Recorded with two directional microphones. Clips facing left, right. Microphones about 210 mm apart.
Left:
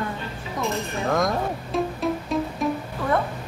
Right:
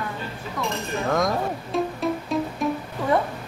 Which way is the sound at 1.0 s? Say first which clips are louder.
Even; centre (ahead or behind).